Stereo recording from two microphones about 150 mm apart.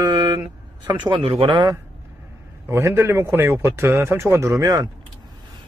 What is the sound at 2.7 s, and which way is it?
A man's voice, 15° right (ahead or behind).